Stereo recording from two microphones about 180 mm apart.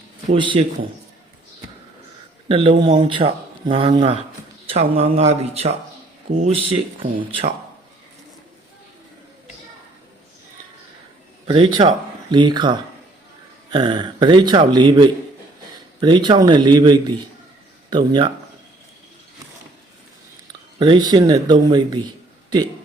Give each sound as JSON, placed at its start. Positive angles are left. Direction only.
{"t": 0.3, "sound": "speech", "side_deg": -25}
{"t": 2.5, "sound": "speech", "side_deg": -30}
{"t": 11.4, "sound": "speech", "side_deg": -30}
{"t": 20.7, "sound": "speech", "side_deg": -25}